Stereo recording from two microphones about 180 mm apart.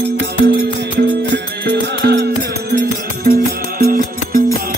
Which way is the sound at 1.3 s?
70° right (ahead or behind).